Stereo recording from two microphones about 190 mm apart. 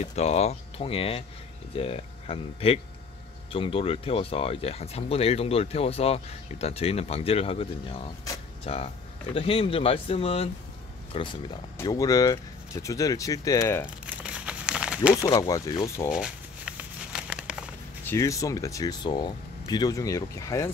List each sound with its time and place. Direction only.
0.0 s speech: 35° left (ahead or behind); by 13.8 s 15° left (ahead or behind)
14.0 s crumpling: 5° right (ahead or behind)
15.2 s speech: 20° left (ahead or behind)
16.1 s crumpling: 5° right (ahead or behind)
18.0 s speech: 15° left (ahead or behind)